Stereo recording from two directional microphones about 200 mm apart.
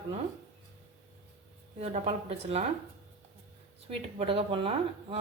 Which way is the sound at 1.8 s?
30° right (ahead or behind).